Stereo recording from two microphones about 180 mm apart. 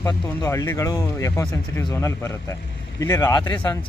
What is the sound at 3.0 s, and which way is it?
Speech, 15° left (ahead or behind).